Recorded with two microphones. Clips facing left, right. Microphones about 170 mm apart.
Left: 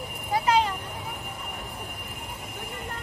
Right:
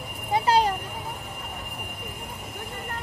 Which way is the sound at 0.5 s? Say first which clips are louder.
Right 2 dB; 40° right (ahead or behind).